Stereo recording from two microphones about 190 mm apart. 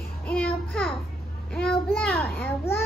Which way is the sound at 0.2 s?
5° left (ahead or behind).